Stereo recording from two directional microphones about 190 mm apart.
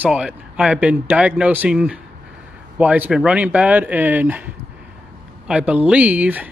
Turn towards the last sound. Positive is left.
turn(degrees=-10)  # may be behind; listen again after turning